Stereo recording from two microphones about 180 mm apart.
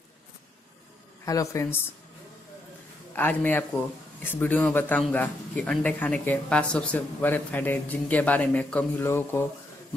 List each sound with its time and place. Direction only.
1.2 s a man's voice: 20° left (ahead or behind)
3.1 s a man's voice: 10° left (ahead or behind)